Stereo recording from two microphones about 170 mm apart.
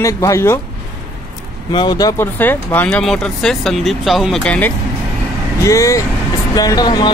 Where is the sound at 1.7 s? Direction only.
25° left (ahead or behind).